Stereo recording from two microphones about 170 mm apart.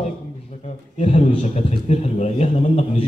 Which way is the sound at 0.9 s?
40° left (ahead or behind).